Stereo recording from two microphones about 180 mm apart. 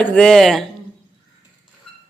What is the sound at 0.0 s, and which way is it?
Speech, 5° left (ahead or behind).